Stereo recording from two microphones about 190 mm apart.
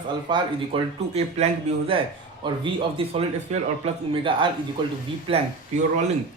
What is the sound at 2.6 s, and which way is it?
A man's voice, 30° right (ahead or behind).